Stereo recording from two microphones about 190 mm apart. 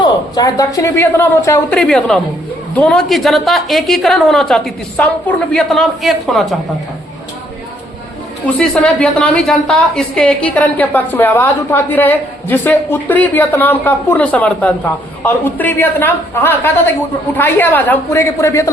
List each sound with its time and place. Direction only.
0.3 s a woman's voice: 20° left (ahead or behind); by 6.6 s centre (ahead or behind)
8.5 s a woman's voice: 5° left (ahead or behind)